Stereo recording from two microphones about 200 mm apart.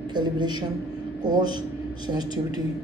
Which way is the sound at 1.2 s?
20° right (ahead or behind).